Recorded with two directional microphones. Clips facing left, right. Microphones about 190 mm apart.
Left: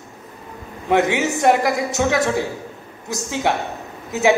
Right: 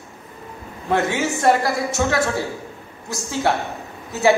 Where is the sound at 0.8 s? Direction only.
15° left (ahead or behind).